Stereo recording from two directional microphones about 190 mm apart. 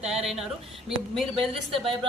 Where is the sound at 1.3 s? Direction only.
30° right (ahead or behind).